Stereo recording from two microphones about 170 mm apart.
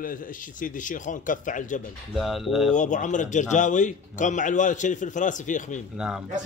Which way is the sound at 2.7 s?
45° left (ahead or behind).